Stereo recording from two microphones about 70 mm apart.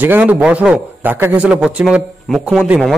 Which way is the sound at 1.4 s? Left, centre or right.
Centre.